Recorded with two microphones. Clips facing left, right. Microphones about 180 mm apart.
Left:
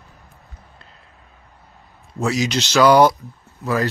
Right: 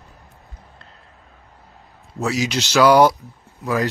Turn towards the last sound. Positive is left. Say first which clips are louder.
# even
turn(degrees=-15)  # may be behind; listen again after turning